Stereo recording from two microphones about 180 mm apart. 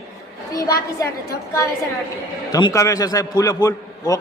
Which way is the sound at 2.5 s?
25° left (ahead or behind).